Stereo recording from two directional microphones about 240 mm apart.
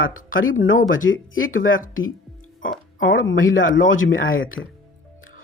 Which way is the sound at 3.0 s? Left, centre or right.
Left.